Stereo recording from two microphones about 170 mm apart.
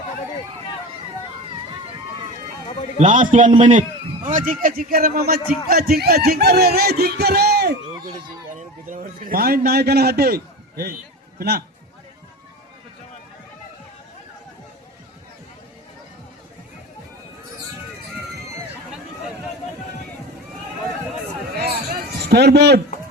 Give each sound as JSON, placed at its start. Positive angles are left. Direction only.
{"t": 3.0, "sound": "a man's voice", "side_deg": -45}
{"t": 4.3, "sound": "a man's voice", "side_deg": -50}
{"t": 8.9, "sound": "a man's voice", "side_deg": -50}
{"t": 22.3, "sound": "a man's voice", "side_deg": -75}